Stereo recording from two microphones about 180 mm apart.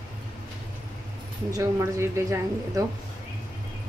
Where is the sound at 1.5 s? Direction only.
15° right (ahead or behind).